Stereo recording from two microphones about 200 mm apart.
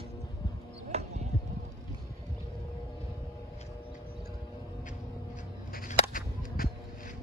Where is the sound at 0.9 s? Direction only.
30° right (ahead or behind).